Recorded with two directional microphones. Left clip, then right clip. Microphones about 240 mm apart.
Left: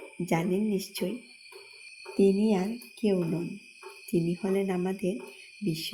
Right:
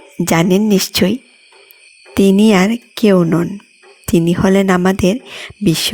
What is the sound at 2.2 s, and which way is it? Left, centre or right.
Speech, right.